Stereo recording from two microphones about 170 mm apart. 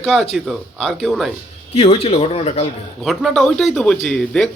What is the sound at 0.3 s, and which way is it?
Speech, centre (ahead or behind).